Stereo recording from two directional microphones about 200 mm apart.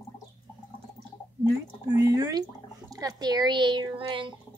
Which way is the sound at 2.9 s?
20° right (ahead or behind).